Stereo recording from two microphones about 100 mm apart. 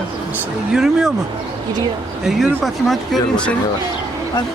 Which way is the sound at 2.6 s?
5° left (ahead or behind).